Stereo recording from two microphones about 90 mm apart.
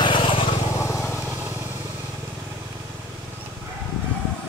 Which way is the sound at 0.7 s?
35° left (ahead or behind).